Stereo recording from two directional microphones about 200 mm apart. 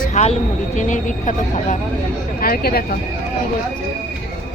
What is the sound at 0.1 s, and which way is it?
Speech, 35° left (ahead or behind).